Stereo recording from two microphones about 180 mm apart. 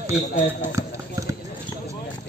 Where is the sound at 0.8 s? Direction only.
15° right (ahead or behind).